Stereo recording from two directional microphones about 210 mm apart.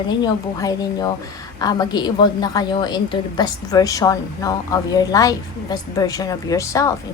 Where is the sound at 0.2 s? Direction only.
15° left (ahead or behind).